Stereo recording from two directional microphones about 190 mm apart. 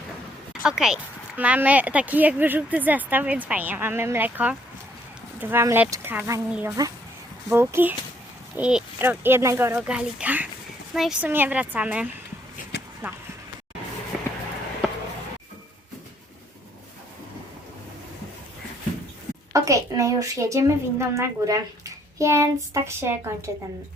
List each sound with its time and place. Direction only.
0.6 s speech: 5° right (ahead or behind)
12.7 s a sound: 60° left (ahead or behind)
14.1 s walk: centre (ahead or behind)
19.5 s speech: 15° right (ahead or behind)